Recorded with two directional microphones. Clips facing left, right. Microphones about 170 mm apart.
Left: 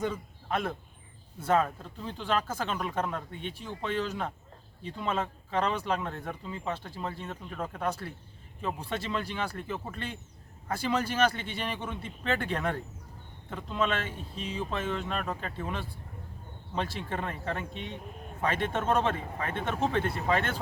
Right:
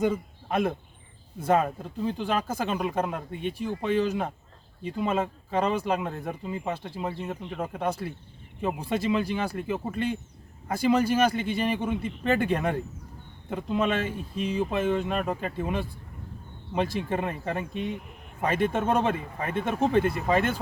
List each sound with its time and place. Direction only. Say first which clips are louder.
0.0 s speech: right 7 dB; 15° right (ahead or behind)